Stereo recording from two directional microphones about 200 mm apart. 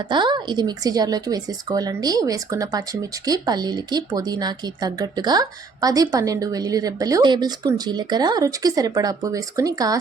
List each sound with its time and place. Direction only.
0.1 s speech: 20° right (ahead or behind)